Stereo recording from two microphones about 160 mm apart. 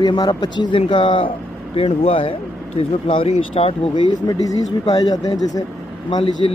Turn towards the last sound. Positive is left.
turn(degrees=30)  # may be behind; listen again after turning